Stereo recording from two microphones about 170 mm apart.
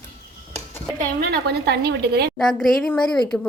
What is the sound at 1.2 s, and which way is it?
Speech, 70° right (ahead or behind).